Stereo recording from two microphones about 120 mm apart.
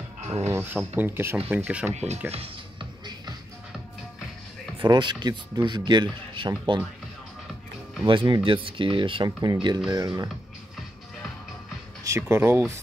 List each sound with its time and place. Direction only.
0.2 s a sound: 65° right (ahead or behind)
0.5 s speech: 20° right (ahead or behind)
1.9 s speech: 70° right (ahead or behind)
2.3 s music: 50° right (ahead or behind)
4.7 s speech: 40° right (ahead or behind)
8.0 s speech: 40° right (ahead or behind)
12.0 s speech: 25° right (ahead or behind)